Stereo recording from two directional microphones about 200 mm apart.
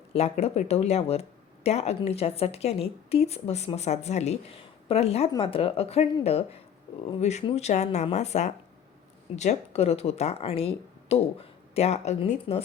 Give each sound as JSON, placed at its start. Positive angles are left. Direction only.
{"t": 0.1, "sound": "speech", "side_deg": 30}